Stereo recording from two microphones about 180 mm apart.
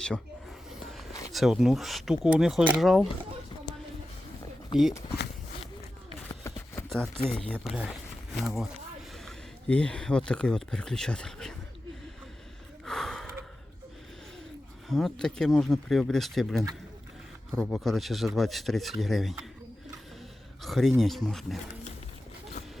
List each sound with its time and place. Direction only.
0.7 s a sound: centre (ahead or behind)
1.3 s speech: centre (ahead or behind)
6.5 s a sound: 15° left (ahead or behind)
6.9 s speech: 5° left (ahead or behind)
12.8 s gasp: centre (ahead or behind)
14.8 s speech: centre (ahead or behind)
20.6 s speech: centre (ahead or behind)